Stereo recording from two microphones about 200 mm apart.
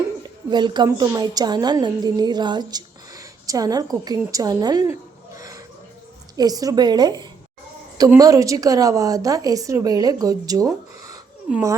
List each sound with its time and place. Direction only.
0.2 s a woman's voice: 20° right (ahead or behind)